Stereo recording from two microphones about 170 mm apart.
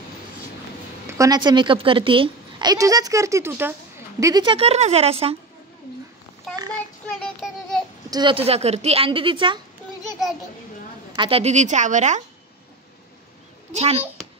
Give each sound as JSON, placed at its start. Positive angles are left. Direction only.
{"t": 1.0, "sound": "a woman's voice", "side_deg": -20}
{"t": 7.2, "sound": "child singing", "side_deg": 5}
{"t": 8.1, "sound": "a woman's voice", "side_deg": -25}
{"t": 11.1, "sound": "a woman's voice", "side_deg": -35}
{"t": 13.7, "sound": "a woman's voice", "side_deg": -35}